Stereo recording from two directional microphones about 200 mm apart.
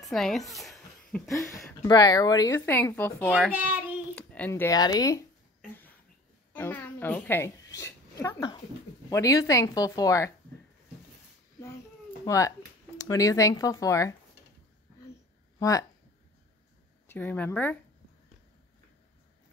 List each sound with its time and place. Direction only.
0.0 s a woman's voice: centre (ahead or behind)
1.2 s a woman's voice: 15° left (ahead or behind)
3.5 s child singing: 10° right (ahead or behind)
4.1 s speech: 5° left (ahead or behind)
6.5 s a child's voice: 10° left (ahead or behind)
12.3 s speech: 15° left (ahead or behind)
17.1 s a woman's voice: 10° left (ahead or behind)